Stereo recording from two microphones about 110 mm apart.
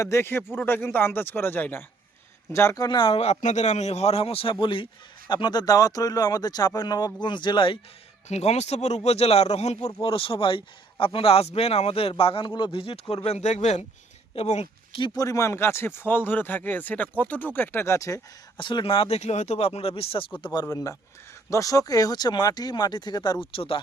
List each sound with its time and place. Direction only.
0.0 s speech: 25° left (ahead or behind)
3.1 s speech: 75° left (ahead or behind); by 4.5 s 60° left (ahead or behind)
4.6 s a man's voice: 50° left (ahead or behind)
8.3 s speech: 80° left
9.0 s speech: 70° left (ahead or behind); by 13.8 s 90° left
14.3 s speech: 75° left (ahead or behind)
14.9 s a man's voice: 50° left (ahead or behind)
15.2 s speech: 30° left (ahead or behind)
18.5 s speech: 45° left (ahead or behind)
20.4 s speech: 40° left (ahead or behind)
23.6 s speech: 55° left (ahead or behind)